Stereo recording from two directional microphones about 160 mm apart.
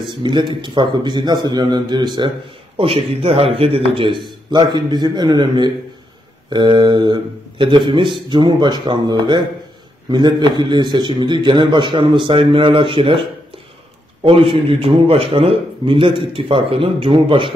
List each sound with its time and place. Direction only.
0.1 s a man's voice: 30° right (ahead or behind)
14.2 s a man's voice: 35° right (ahead or behind)